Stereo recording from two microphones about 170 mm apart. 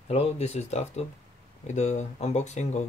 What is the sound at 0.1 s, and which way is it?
Speech, 40° left (ahead or behind).